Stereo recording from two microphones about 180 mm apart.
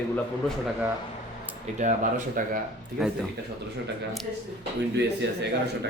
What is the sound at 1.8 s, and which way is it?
Speech, 40° right (ahead or behind).